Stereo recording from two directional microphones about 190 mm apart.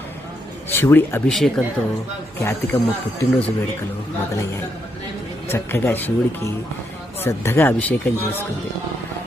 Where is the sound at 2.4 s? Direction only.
15° left (ahead or behind).